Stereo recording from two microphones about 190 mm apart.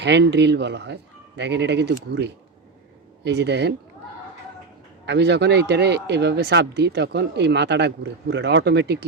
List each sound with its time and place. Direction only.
0.0 s speech: 65° right (ahead or behind)
5.0 s speech: 65° right (ahead or behind)